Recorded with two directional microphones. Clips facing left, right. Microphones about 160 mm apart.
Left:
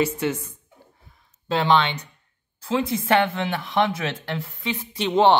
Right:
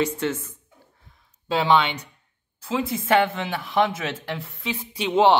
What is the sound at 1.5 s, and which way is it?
Speech, 5° right (ahead or behind).